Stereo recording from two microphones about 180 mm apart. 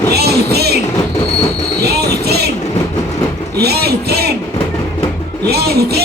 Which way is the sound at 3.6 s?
60° right (ahead or behind).